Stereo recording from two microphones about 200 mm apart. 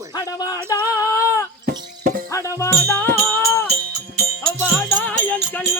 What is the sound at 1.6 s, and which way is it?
Music, 45° right (ahead or behind).